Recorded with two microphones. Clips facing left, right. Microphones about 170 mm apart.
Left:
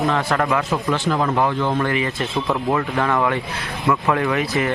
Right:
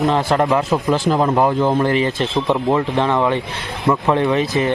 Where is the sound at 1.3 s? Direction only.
35° right (ahead or behind).